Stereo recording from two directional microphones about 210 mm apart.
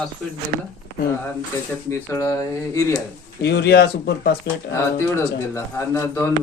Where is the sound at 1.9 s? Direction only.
15° left (ahead or behind).